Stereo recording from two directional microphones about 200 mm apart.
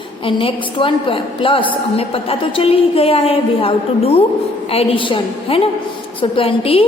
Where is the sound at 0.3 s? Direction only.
25° left (ahead or behind).